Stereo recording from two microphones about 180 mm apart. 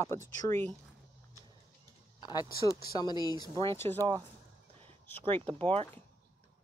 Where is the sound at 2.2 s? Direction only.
20° left (ahead or behind).